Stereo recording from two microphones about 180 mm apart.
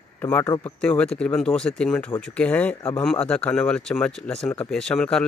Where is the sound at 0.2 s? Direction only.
10° left (ahead or behind).